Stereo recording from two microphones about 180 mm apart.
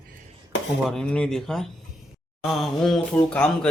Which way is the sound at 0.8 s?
5° left (ahead or behind).